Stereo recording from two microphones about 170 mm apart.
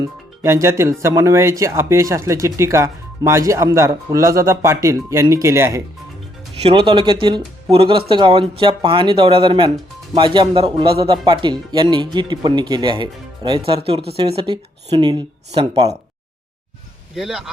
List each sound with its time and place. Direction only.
0.0 s speech: 15° right (ahead or behind)
6.6 s speech: 30° right (ahead or behind)
17.2 s a man's voice: centre (ahead or behind)